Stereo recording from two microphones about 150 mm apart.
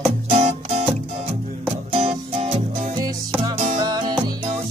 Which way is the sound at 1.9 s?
40° right (ahead or behind).